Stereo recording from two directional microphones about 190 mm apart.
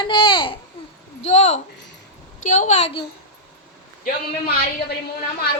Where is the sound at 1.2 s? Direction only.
35° left (ahead or behind).